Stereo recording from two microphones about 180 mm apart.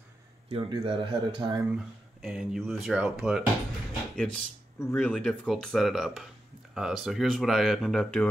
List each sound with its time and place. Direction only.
0.5 s speech: 30° right (ahead or behind)
1.7 s speech: 5° right (ahead or behind)
4.2 s speech: 5° left (ahead or behind)